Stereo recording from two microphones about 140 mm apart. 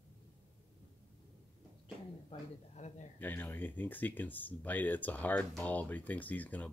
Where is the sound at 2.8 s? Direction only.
60° left (ahead or behind).